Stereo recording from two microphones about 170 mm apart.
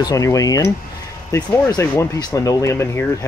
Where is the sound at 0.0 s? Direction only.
20° left (ahead or behind).